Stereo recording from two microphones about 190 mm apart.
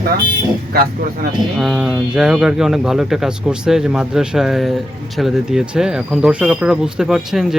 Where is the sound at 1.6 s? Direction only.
Centre (ahead or behind).